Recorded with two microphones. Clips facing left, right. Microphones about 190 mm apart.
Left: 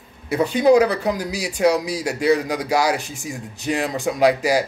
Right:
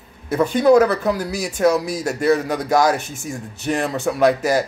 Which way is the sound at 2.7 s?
45° right (ahead or behind).